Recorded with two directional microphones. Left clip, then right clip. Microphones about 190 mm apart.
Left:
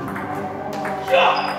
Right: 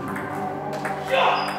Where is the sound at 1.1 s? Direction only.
5° right (ahead or behind).